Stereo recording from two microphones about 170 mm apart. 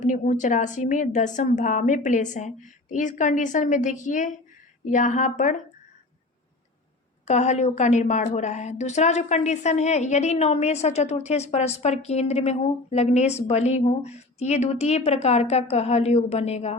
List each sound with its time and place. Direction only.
0.0 s a woman's voice: 45° left (ahead or behind)
7.3 s a woman's voice: 40° left (ahead or behind)